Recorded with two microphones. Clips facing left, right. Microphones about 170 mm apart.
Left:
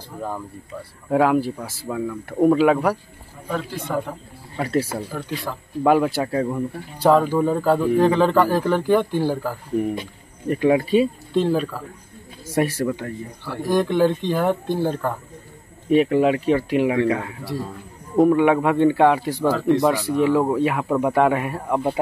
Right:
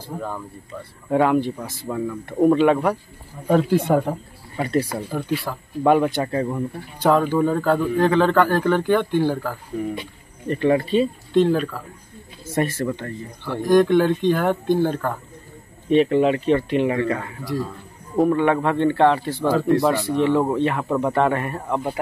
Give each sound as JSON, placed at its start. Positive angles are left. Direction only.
{"t": 1.1, "sound": "speech", "side_deg": 5}
{"t": 3.8, "sound": "speech", "side_deg": -55}
{"t": 4.6, "sound": "speech", "side_deg": 5}
{"t": 4.9, "sound": "speech", "side_deg": -10}